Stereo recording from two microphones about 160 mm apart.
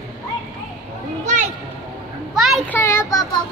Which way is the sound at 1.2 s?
50° right (ahead or behind).